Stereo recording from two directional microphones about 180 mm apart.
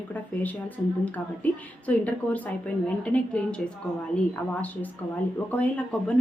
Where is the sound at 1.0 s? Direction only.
10° left (ahead or behind).